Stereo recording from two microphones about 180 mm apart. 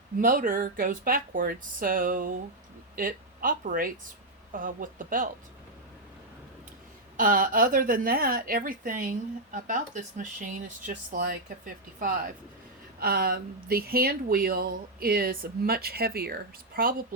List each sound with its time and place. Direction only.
0.2 s a woman's voice: 50° right (ahead or behind)
7.2 s a woman's voice: 50° right (ahead or behind)